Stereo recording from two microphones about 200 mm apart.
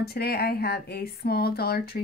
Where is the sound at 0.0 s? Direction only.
50° left (ahead or behind).